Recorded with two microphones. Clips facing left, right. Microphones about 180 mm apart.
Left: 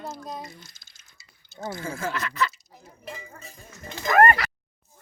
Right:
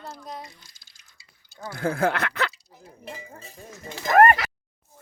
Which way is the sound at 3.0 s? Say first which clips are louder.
Even; 30° right (ahead or behind).